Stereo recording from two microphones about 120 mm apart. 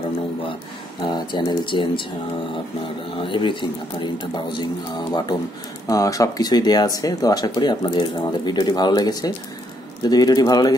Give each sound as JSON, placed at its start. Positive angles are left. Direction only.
{"t": 1.0, "sound": "speech", "side_deg": 40}
{"t": 3.2, "sound": "speech", "side_deg": 45}